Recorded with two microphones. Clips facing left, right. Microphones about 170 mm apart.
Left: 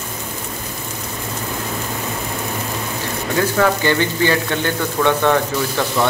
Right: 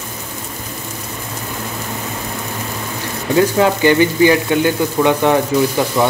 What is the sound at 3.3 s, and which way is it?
Speech, 20° right (ahead or behind).